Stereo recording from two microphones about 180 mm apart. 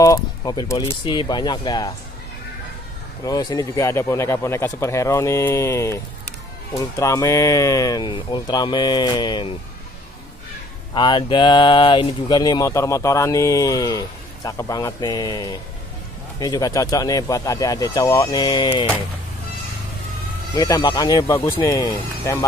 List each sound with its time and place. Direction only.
0.0 s speech: 20° left (ahead or behind)
3.3 s speech: 20° left (ahead or behind)
7.0 s speech: 15° left (ahead or behind)
11.0 s speech: 25° left (ahead or behind)
20.5 s speech: 20° left (ahead or behind)